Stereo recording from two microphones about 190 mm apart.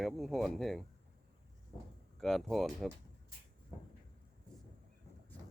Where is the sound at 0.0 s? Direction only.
Centre (ahead or behind).